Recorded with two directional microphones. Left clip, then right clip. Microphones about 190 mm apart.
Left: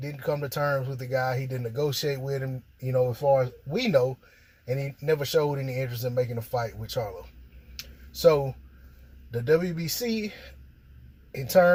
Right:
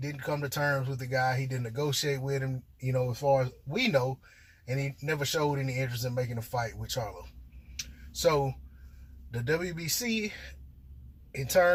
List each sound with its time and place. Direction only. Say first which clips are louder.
0.0 s speech: left 4 dB; 40° left (ahead or behind)
6.0 s speech: left 6 dB; 25° left (ahead or behind)
6.5 s speech: left 3 dB; 40° left (ahead or behind)
8.2 s speech: left 6 dB; 40° left (ahead or behind)